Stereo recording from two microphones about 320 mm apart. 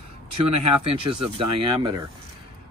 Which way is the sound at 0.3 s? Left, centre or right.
Right.